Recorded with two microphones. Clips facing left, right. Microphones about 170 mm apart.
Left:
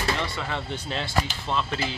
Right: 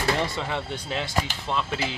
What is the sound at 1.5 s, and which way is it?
Speech, 10° right (ahead or behind).